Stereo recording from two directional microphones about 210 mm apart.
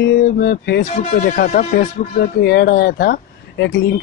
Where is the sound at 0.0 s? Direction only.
45° left (ahead or behind).